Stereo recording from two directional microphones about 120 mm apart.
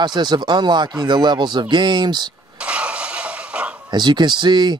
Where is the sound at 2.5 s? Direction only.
10° right (ahead or behind).